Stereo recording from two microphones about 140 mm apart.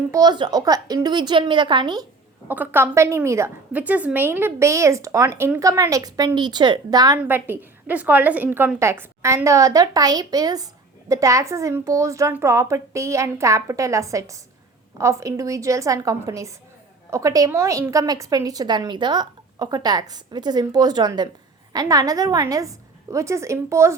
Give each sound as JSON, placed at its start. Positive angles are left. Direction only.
{"t": 0.1, "sound": "a woman's voice", "side_deg": -30}
{"t": 2.5, "sound": "a woman's voice", "side_deg": -15}
{"t": 7.3, "sound": "a woman's voice", "side_deg": -15}